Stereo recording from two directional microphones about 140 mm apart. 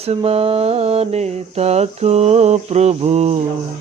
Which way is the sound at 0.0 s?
45° right (ahead or behind).